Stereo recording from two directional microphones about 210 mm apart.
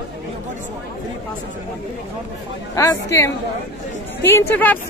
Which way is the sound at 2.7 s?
15° left (ahead or behind).